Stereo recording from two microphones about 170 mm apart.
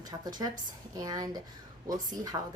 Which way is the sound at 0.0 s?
20° right (ahead or behind).